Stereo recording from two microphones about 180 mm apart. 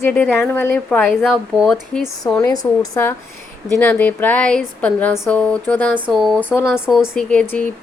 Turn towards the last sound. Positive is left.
turn(degrees=10)  # may be behind; listen again after turning